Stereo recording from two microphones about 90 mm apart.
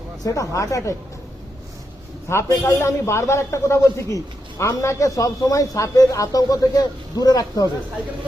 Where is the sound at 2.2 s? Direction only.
30° left (ahead or behind).